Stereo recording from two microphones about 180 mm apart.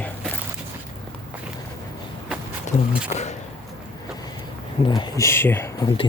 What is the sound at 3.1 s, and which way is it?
Speech, 40° left (ahead or behind).